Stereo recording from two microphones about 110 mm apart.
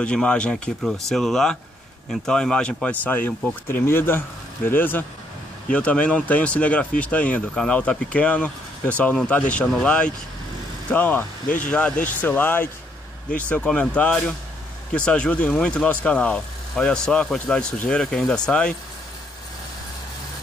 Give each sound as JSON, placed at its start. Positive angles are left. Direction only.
{"t": 0.0, "sound": "speech", "side_deg": 10}